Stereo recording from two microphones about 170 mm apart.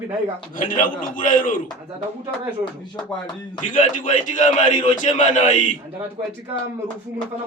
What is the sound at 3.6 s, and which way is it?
A man's voice, 50° left (ahead or behind).